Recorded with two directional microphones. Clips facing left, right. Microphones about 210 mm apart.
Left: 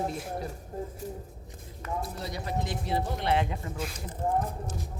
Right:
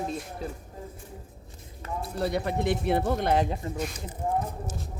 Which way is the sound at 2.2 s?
60° right (ahead or behind).